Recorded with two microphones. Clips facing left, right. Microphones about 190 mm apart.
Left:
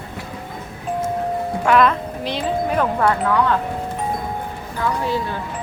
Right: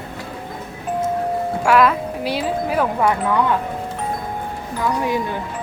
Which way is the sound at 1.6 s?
5° right (ahead or behind).